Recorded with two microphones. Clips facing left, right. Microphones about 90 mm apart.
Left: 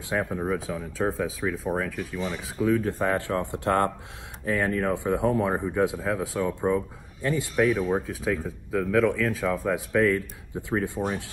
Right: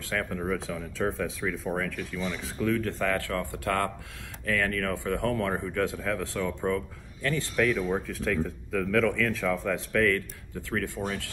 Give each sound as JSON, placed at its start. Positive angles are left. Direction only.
{"t": 0.1, "sound": "speech", "side_deg": 20}
{"t": 0.7, "sound": "speech", "side_deg": 10}
{"t": 2.0, "sound": "speech", "side_deg": 20}